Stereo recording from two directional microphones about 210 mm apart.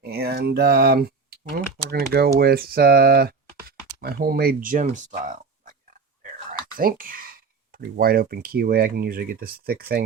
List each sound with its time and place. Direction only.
0.0 s speech: 45° right (ahead or behind)
6.5 s a sound: 40° right (ahead or behind)
7.9 s speech: 45° right (ahead or behind)